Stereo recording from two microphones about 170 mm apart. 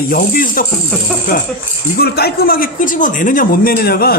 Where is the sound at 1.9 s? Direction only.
70° left (ahead or behind).